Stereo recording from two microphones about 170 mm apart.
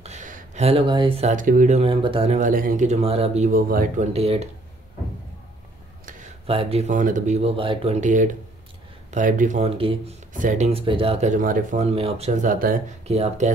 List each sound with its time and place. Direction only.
0.0 s a sound: 45° right (ahead or behind)
1.3 s speech: 50° right (ahead or behind)
3.4 s speech: 55° right (ahead or behind)
4.1 s speech: 35° right (ahead or behind)
6.4 s speech: 35° right (ahead or behind)
9.8 s speech: 35° right (ahead or behind)
10.3 s speech: 50° right (ahead or behind)
13.0 s speech: 40° right (ahead or behind)